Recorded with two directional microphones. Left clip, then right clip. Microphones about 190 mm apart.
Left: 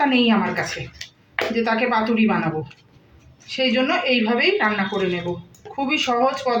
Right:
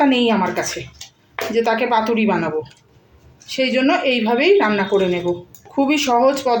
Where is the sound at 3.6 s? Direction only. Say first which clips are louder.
Right 3 dB; 55° right (ahead or behind).